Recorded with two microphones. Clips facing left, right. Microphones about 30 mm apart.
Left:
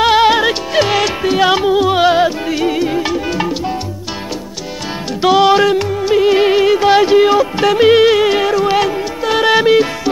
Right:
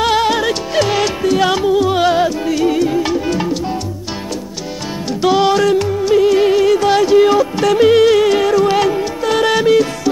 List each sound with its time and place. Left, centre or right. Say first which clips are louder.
0.0 s music: left 4 dB; left
5.5 s music: left 2 dB; left